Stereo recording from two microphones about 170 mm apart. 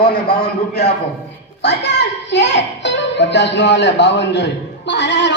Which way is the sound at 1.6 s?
85° left.